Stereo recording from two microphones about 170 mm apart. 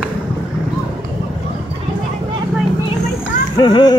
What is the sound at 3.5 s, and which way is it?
Speech, 25° left (ahead or behind).